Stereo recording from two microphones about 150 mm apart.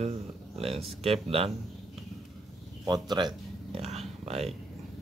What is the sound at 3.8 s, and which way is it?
Speech, 45° right (ahead or behind).